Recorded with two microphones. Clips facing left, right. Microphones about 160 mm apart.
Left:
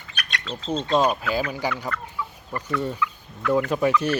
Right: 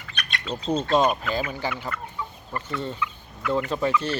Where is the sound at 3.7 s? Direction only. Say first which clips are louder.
Left 3 dB; 10° left (ahead or behind).